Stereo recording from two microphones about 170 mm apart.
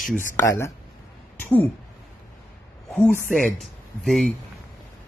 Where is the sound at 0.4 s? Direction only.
15° left (ahead or behind).